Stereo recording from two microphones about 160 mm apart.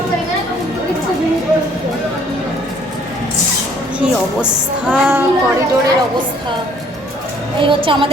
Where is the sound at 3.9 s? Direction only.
10° right (ahead or behind).